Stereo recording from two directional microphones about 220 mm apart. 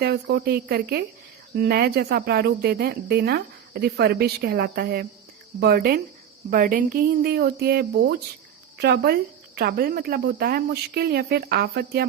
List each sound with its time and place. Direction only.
0.0 s a woman's voice: 45° right (ahead or behind)